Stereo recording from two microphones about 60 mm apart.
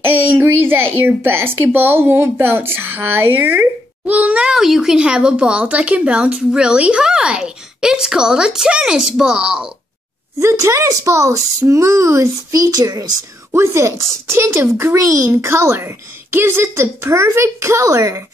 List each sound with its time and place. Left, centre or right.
0.0 s a child's voice: right
4.0 s a child's voice: right
4.5 s speech: centre
10.4 s speech: right
12.5 s a child's voice: right
13.5 s speech: right
15.0 s speech: right
15.4 s speech: right